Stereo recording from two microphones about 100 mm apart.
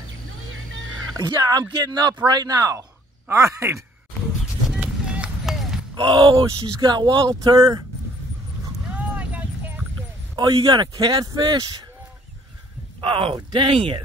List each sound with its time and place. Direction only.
1.1 s speech: 45° right (ahead or behind); by 3.8 s 30° right (ahead or behind)
4.6 s run: 10° right (ahead or behind)
5.9 s speech: 55° right (ahead or behind); by 7.8 s 35° right (ahead or behind)
8.9 s vehicle: 15° right (ahead or behind)
10.3 s speech: 45° right (ahead or behind)
13.0 s speech: 60° right (ahead or behind)